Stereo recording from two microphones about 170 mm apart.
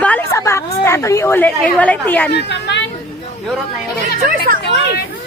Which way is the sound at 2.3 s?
90° left.